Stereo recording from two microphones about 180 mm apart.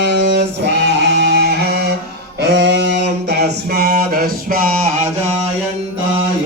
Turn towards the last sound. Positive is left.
turn(degrees=-55)  # may be behind; listen again after turning